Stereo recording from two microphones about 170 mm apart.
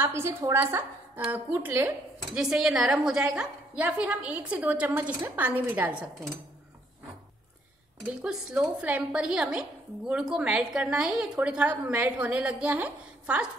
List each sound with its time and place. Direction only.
0.0 s a woman's voice: 15° right (ahead or behind)
8.0 s a woman's voice: 5° right (ahead or behind)